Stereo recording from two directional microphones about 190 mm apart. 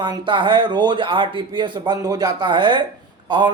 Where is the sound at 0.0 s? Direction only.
25° right (ahead or behind).